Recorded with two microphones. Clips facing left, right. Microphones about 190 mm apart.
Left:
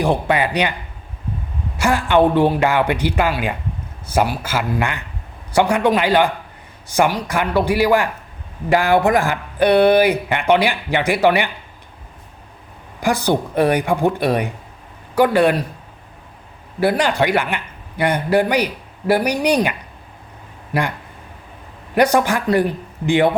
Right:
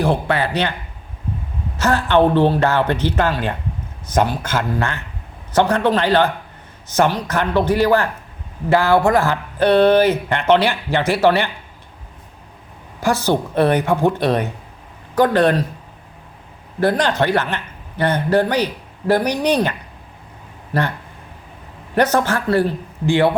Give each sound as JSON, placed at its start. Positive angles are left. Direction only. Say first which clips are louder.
{"t": 0.0, "sound": "a man's voice", "louder": "left 1 dB", "side_deg": 15}
{"t": 1.7, "sound": "a man's voice", "louder": "even", "side_deg": 10}
{"t": 13.0, "sound": "a man's voice", "louder": "even", "side_deg": 15}
{"t": 16.8, "sound": "a man's voice", "louder": "even", "side_deg": 10}
{"t": 20.7, "sound": "a man's voice", "louder": "even", "side_deg": 15}
{"t": 21.9, "sound": "a man's voice", "louder": "left 1 dB", "side_deg": 10}